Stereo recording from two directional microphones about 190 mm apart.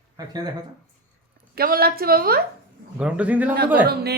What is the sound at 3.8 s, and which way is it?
Speech, 55° right (ahead or behind).